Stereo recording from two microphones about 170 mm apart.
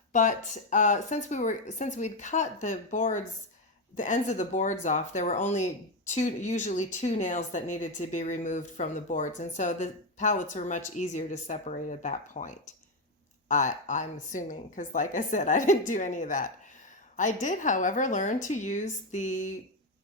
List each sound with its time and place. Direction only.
0.1 s speech: 45° left (ahead or behind)